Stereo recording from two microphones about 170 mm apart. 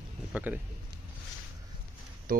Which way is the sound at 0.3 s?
10° right (ahead or behind).